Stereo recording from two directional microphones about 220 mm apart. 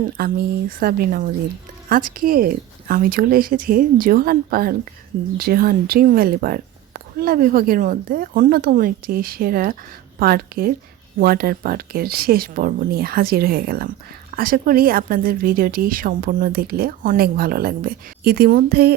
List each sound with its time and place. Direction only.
0.2 s speech: 45° right (ahead or behind)